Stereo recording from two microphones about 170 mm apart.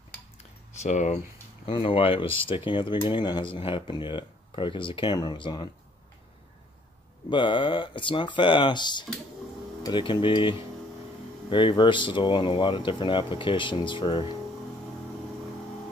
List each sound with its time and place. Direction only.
0.8 s speech: 45° left (ahead or behind)
1.7 s speech: 30° left (ahead or behind)
7.2 s speech: 30° left (ahead or behind)
11.5 s speech: 30° left (ahead or behind)